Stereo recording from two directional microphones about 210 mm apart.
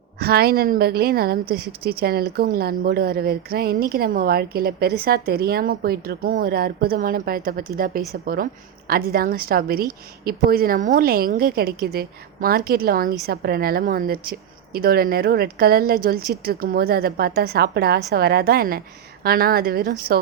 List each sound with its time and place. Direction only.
0.2 s a woman's voice: 50° right (ahead or behind)